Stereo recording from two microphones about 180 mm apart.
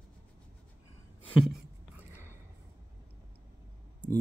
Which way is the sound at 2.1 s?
15° right (ahead or behind).